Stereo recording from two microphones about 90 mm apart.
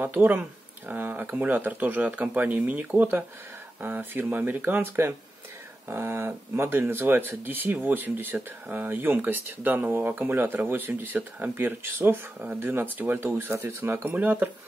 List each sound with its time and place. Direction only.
0.0 s speech: 20° right (ahead or behind)